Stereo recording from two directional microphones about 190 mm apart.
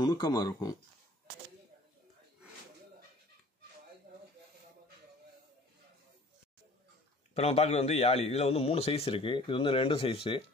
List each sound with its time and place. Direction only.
0.0 s speech: 20° left (ahead or behind)
7.3 s a man's voice: 30° left (ahead or behind)